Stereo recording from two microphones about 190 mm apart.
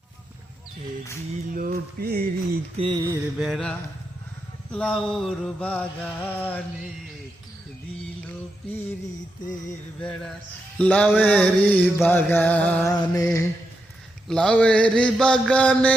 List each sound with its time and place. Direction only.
1.5 s mantra: 50° right (ahead or behind)
2.7 s mantra: 25° right (ahead or behind)
3.3 s mantra: centre (ahead or behind)
10.8 s mantra: 10° left (ahead or behind)
14.3 s mantra: 5° left (ahead or behind)